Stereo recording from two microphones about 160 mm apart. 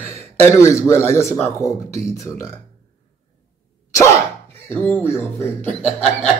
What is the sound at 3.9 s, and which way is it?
Speech, 15° left (ahead or behind).